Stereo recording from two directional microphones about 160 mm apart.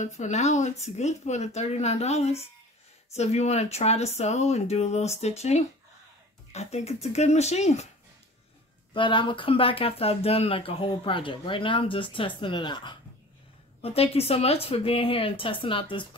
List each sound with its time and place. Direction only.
0.0 s speech: 45° left (ahead or behind)
8.9 s speech: 30° left (ahead or behind)